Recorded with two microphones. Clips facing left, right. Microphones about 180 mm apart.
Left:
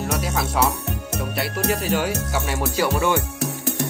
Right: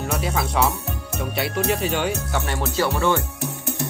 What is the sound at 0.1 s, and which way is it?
Music, centre (ahead or behind).